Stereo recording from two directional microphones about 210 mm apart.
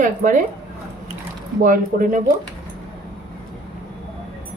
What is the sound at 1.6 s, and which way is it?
Speech, 40° right (ahead or behind).